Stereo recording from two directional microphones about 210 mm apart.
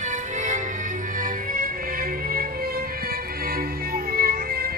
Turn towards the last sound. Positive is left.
turn(degrees=-45)  # may be behind; listen again after turning